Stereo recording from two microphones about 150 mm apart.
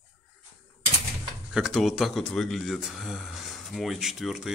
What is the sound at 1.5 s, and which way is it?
Speech, 5° right (ahead or behind).